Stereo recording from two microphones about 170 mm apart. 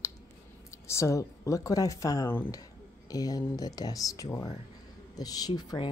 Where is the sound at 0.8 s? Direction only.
15° left (ahead or behind).